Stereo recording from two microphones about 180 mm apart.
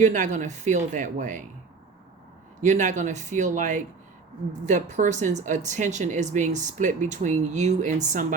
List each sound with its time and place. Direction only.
0.0 s speech: 45° right (ahead or behind)
2.6 s speech: 45° right (ahead or behind)